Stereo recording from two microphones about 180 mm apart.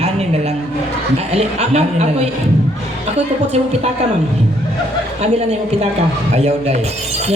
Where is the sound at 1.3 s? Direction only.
35° right (ahead or behind).